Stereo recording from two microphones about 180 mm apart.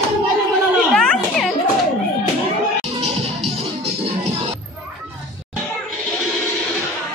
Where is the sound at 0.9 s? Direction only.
5° left (ahead or behind).